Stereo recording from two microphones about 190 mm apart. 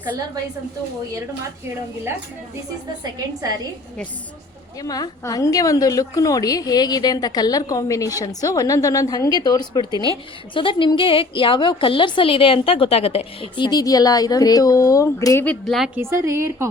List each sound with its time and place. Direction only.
4.8 s a woman's voice: 20° left (ahead or behind)
15.4 s speech: centre (ahead or behind)
16.0 s a woman's voice: 15° right (ahead or behind)